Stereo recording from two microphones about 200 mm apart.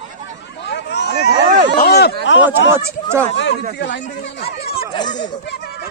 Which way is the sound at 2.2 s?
65° left (ahead or behind).